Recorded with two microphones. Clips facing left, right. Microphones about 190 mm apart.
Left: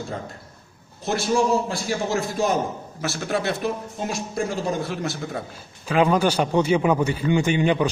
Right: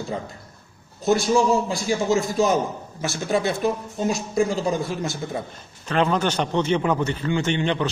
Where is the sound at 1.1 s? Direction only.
Centre (ahead or behind).